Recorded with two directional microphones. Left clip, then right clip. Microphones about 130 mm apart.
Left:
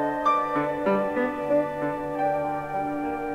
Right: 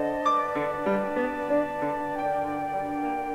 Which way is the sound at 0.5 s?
25° right (ahead or behind).